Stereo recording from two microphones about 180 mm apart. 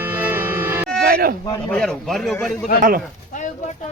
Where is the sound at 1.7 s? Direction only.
5° left (ahead or behind).